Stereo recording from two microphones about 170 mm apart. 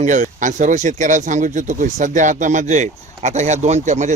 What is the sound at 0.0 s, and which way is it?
Speech, 45° right (ahead or behind).